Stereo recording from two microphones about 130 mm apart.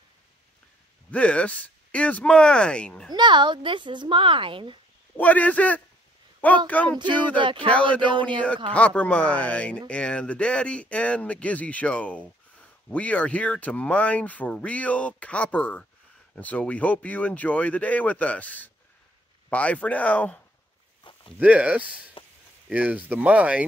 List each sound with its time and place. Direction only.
1.1 s speech: 10° left (ahead or behind)
3.1 s speech: 35° right (ahead or behind)
5.1 s speech: 10° left (ahead or behind)
8.1 s speech: 40° right (ahead or behind)
8.7 s speech: 10° left (ahead or behind)
21.0 s a sound: 40° left (ahead or behind)
21.4 s speech: 10° right (ahead or behind)